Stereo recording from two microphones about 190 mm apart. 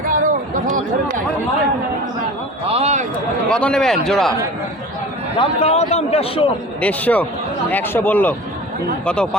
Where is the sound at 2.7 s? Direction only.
35° right (ahead or behind).